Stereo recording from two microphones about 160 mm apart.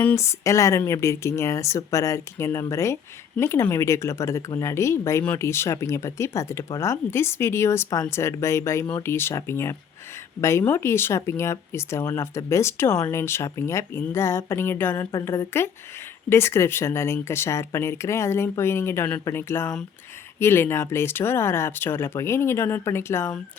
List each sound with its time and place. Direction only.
0.0 s speech: 15° left (ahead or behind)